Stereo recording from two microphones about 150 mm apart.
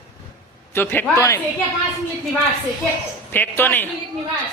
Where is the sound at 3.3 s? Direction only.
15° left (ahead or behind).